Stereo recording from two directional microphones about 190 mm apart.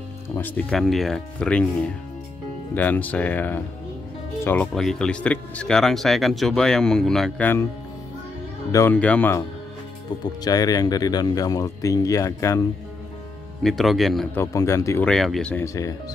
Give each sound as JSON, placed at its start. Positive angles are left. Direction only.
{"t": 0.4, "sound": "speech", "side_deg": 5}
{"t": 8.7, "sound": "speech", "side_deg": 10}
{"t": 10.4, "sound": "speech", "side_deg": 20}
{"t": 13.6, "sound": "speech", "side_deg": 0}
{"t": 14.4, "sound": "speech", "side_deg": 15}
{"t": 15.0, "sound": "speech", "side_deg": 0}
{"t": 15.6, "sound": "speech", "side_deg": 15}